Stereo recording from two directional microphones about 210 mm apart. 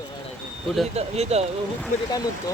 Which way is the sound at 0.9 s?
30° right (ahead or behind).